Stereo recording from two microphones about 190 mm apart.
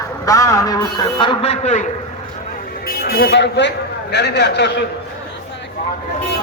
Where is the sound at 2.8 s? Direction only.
55° left (ahead or behind).